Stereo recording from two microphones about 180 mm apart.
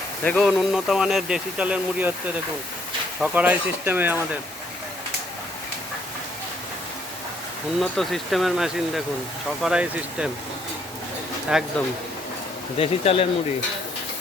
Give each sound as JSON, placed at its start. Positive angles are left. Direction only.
{"t": 0.2, "sound": "speech", "side_deg": 10}
{"t": 0.4, "sound": "speech", "side_deg": -5}
{"t": 7.8, "sound": "speech", "side_deg": 0}
{"t": 11.5, "sound": "speech", "side_deg": -5}
{"t": 12.7, "sound": "speech", "side_deg": 30}